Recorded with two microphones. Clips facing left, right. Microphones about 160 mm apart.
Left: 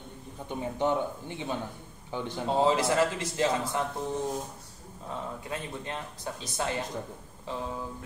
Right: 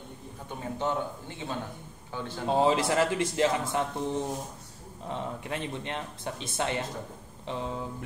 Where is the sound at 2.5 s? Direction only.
20° right (ahead or behind).